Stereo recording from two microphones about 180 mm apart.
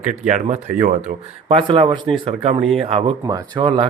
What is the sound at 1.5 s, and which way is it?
Speech, 30° right (ahead or behind).